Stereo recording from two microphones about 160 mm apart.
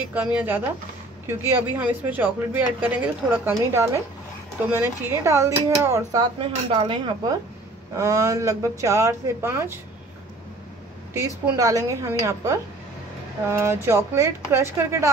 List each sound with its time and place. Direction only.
0.1 s speech: 10° right (ahead or behind); by 7.3 s 30° right (ahead or behind)
7.9 s speech: 20° right (ahead or behind)
11.1 s speech: 20° right (ahead or behind)